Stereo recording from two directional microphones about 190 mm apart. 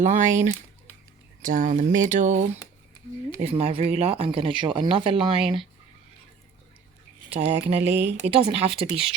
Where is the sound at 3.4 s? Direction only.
30° right (ahead or behind).